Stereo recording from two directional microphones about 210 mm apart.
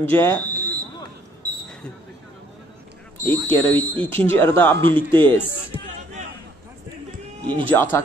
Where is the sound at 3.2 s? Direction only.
20° right (ahead or behind).